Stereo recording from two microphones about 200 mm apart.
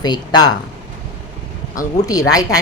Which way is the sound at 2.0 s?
15° left (ahead or behind).